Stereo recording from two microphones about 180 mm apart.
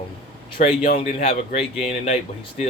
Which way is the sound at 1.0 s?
40° left (ahead or behind).